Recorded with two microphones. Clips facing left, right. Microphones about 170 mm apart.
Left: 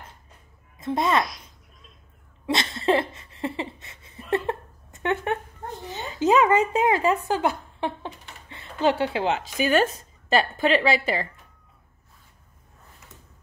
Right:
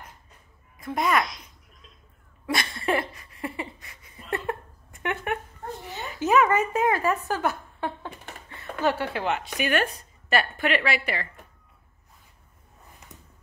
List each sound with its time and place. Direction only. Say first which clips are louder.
0.7 s a woman's voice: left 2 dB; 25° left (ahead or behind)
2.4 s a sound: left 4 dB; 25° left (ahead or behind)
6.2 s a woman's voice: left 2 dB; 25° left (ahead or behind)